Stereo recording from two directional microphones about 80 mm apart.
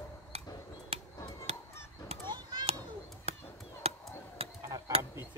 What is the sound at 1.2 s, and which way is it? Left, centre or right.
Children playing, left.